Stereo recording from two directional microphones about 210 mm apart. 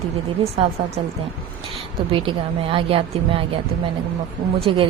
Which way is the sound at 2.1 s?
25° right (ahead or behind).